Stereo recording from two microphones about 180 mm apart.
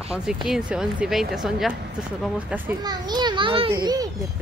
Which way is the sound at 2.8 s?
25° right (ahead or behind).